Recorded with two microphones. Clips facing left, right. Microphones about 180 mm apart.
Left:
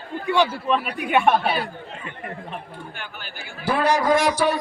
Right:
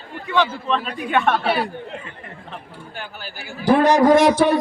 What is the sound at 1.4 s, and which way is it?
Speech, 70° right (ahead or behind).